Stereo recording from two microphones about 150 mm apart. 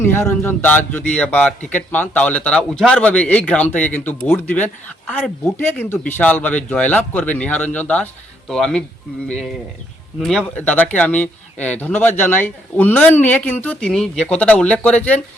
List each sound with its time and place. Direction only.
0.0 s a man's voice: 15° left (ahead or behind)